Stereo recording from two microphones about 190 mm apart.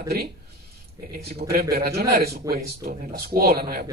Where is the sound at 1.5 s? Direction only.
55° right (ahead or behind).